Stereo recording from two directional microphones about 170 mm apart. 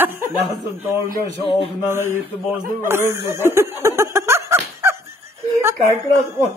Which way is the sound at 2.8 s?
15° right (ahead or behind).